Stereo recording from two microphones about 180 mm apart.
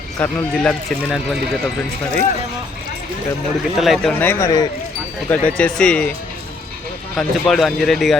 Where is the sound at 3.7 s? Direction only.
Centre (ahead or behind).